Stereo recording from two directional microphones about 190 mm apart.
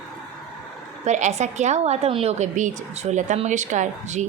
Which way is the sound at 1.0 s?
40° right (ahead or behind).